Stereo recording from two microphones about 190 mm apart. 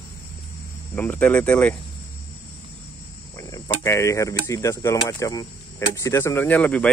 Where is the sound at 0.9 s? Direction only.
10° left (ahead or behind).